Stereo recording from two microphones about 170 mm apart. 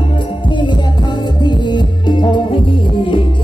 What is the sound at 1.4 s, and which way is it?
Music, 25° left (ahead or behind).